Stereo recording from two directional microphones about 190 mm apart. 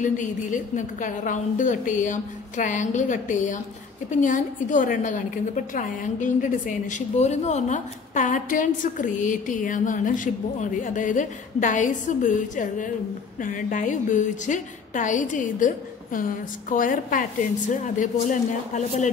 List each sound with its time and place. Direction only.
0.0 s a woman's voice: 40° left (ahead or behind)